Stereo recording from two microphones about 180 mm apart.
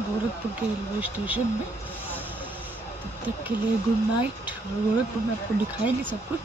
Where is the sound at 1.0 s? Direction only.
10° right (ahead or behind).